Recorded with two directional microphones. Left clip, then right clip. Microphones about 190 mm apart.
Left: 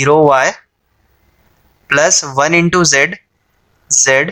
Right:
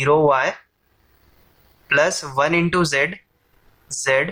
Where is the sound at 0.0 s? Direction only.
35° left (ahead or behind).